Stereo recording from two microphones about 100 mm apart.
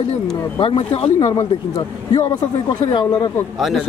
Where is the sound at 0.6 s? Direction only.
60° left (ahead or behind).